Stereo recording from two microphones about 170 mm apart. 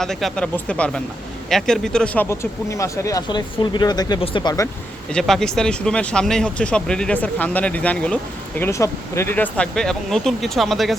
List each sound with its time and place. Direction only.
0.0 s speech: centre (ahead or behind)
2.3 s speech: 15° left (ahead or behind)
5.1 s speech: centre (ahead or behind)